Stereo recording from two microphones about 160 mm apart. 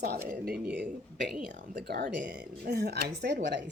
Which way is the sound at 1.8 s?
75° right (ahead or behind).